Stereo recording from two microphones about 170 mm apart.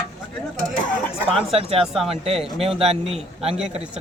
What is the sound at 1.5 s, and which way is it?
Speech, 35° right (ahead or behind).